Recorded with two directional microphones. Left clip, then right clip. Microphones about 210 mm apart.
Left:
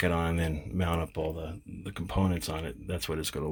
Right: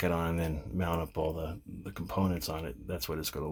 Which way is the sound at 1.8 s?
10° left (ahead or behind).